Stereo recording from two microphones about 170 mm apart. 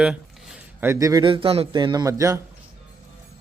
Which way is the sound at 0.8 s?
15° right (ahead or behind).